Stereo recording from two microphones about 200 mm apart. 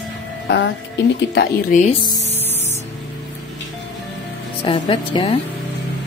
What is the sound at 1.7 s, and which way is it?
Speech, 35° left (ahead or behind).